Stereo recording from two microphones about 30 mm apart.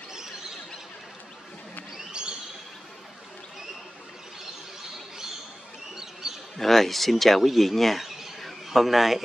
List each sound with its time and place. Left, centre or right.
2.2 s bird: right
6.6 s a man's voice: centre